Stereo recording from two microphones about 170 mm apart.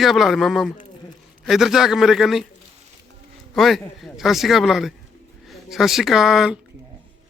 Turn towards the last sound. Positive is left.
turn(degrees=0)  # may be behind; listen again after turning